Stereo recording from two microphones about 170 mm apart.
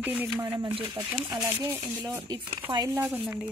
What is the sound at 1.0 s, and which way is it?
Speech, 15° right (ahead or behind).